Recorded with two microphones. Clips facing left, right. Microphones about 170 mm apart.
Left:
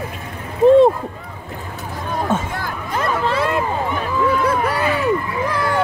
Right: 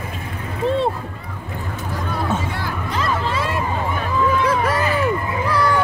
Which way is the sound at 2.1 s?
50° left (ahead or behind).